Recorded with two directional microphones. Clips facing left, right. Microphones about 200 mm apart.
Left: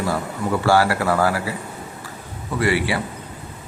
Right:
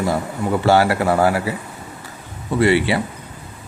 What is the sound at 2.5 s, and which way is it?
Speech, 25° right (ahead or behind).